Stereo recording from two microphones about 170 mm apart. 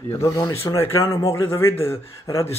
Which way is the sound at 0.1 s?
15° left (ahead or behind).